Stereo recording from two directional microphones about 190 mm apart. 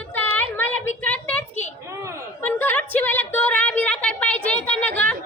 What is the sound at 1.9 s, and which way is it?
Speech, 15° right (ahead or behind).